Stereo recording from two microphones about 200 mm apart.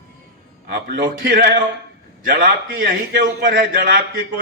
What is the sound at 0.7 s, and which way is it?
A man's voice, 45° right (ahead or behind).